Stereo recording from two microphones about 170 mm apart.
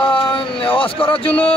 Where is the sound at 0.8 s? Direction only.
30° left (ahead or behind).